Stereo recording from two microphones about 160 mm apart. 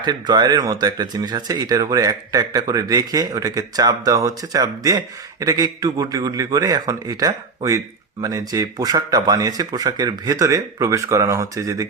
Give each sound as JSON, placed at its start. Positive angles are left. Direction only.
{"t": 0.0, "sound": "speech", "side_deg": -25}